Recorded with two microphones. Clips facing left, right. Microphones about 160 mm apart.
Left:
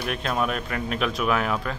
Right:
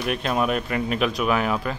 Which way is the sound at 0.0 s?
5° right (ahead or behind).